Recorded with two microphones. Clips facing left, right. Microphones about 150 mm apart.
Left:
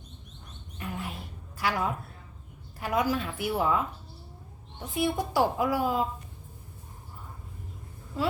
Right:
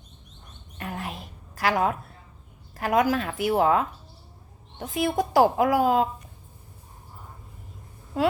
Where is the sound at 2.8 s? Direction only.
90° right.